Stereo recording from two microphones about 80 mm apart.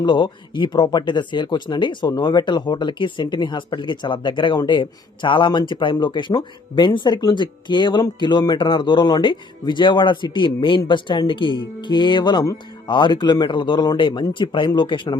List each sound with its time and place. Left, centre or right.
0.0 s speech: left